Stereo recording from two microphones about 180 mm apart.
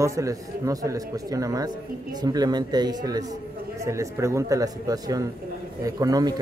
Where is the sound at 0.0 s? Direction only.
15° right (ahead or behind).